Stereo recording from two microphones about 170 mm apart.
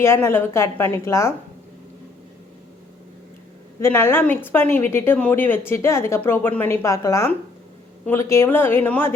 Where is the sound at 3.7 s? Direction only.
15° left (ahead or behind).